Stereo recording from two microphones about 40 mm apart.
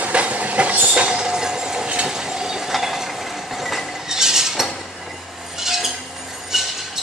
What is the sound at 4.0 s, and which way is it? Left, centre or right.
Chink, centre.